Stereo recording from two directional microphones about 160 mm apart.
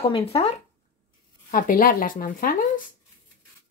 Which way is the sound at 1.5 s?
60° left (ahead or behind).